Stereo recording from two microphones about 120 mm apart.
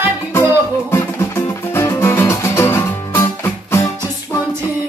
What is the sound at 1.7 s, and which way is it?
Music, 20° left (ahead or behind).